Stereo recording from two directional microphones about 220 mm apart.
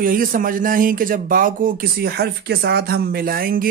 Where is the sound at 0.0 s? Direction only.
40° right (ahead or behind).